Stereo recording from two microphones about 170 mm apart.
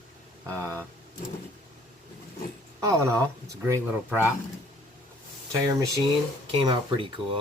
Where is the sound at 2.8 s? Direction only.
15° right (ahead or behind).